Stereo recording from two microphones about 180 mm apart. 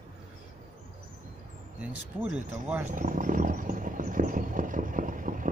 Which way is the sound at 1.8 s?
5° right (ahead or behind).